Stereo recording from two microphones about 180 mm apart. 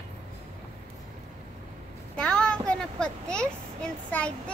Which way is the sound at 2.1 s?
5° left (ahead or behind).